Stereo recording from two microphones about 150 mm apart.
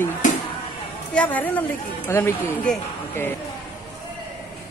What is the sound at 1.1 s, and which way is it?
Speech, 10° left (ahead or behind).